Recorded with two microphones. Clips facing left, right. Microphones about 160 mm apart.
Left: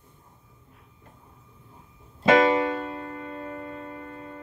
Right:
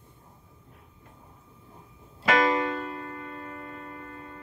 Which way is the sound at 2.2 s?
25° left (ahead or behind).